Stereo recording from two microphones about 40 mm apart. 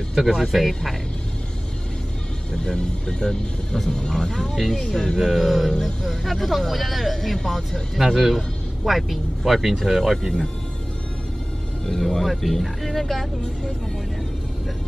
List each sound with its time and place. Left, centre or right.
0.1 s speech: centre
2.5 s speech: centre
4.6 s speech: centre
7.9 s speech: centre
11.8 s speech: centre